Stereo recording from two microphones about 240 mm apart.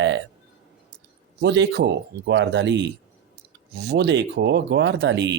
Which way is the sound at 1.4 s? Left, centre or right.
Right.